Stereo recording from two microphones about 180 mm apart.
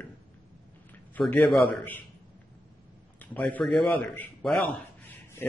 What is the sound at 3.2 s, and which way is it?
A man's voice, 10° left (ahead or behind).